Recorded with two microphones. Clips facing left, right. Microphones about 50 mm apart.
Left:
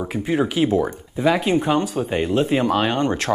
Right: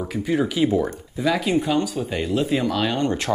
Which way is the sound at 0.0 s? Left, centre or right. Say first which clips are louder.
Left 1 dB; centre.